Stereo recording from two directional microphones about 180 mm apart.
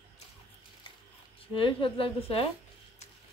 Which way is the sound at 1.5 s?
30° left (ahead or behind).